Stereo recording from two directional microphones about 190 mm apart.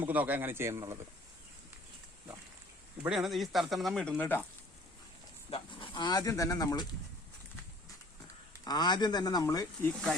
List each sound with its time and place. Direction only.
0.0 s speech: 10° right (ahead or behind)
3.0 s speech: 5° right (ahead or behind)
5.5 s speech: 25° left (ahead or behind)
8.6 s speech: 20° left (ahead or behind)
9.9 s speech: centre (ahead or behind)